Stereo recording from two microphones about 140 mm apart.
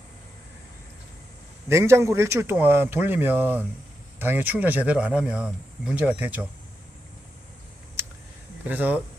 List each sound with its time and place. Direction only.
1.7 s a man's voice: 20° right (ahead or behind)
8.6 s a man's voice: 10° right (ahead or behind)